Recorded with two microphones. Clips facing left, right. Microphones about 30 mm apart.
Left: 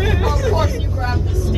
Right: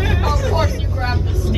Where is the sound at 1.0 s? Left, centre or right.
Right.